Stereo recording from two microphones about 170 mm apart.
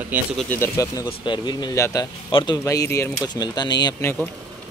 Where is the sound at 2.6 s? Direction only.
15° left (ahead or behind).